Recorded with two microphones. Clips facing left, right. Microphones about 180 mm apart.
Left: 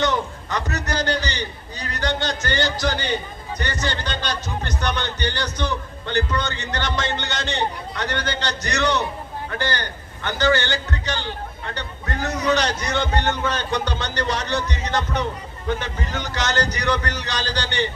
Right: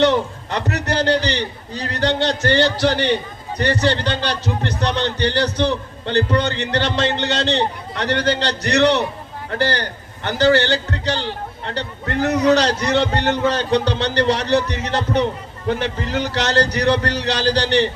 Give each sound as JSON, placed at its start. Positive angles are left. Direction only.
{"t": 0.0, "sound": "a man's voice", "side_deg": -30}